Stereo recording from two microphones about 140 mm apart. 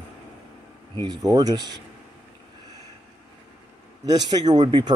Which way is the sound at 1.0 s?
25° right (ahead or behind).